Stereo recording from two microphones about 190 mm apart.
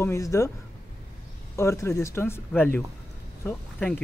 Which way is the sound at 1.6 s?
15° left (ahead or behind).